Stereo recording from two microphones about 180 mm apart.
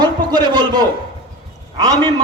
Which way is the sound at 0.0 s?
25° right (ahead or behind).